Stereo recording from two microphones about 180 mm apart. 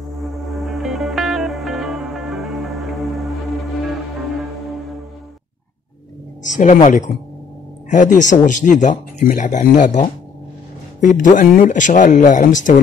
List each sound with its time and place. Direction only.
0.2 s music: centre (ahead or behind)
6.4 s speech: 45° left (ahead or behind)